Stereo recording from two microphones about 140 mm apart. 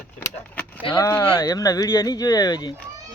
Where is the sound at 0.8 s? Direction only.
40° left (ahead or behind).